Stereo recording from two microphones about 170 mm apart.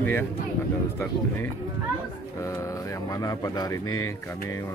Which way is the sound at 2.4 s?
20° left (ahead or behind).